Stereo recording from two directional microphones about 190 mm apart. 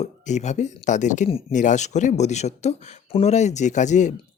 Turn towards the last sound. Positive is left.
turn(degrees=40)  # may be behind; listen again after turning